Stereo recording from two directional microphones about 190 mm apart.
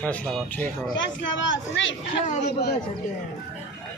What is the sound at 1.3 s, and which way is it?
Speech, 80° left.